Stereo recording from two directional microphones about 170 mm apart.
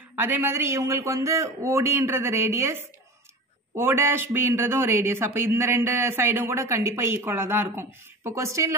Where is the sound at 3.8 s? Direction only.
15° right (ahead or behind).